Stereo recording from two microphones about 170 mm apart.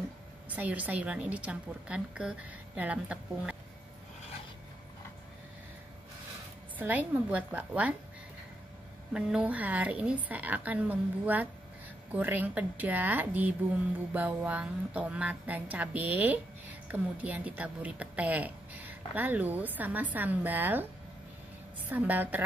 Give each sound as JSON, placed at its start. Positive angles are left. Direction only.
{"t": 0.6, "sound": "a woman's voice", "side_deg": -10}
{"t": 6.8, "sound": "a woman's voice", "side_deg": -10}
{"t": 9.1, "sound": "a woman's voice", "side_deg": -5}
{"t": 21.8, "sound": "a woman's voice", "side_deg": -10}